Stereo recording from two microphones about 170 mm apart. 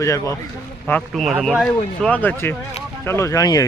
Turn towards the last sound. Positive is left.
turn(degrees=20)  # may be behind; listen again after turning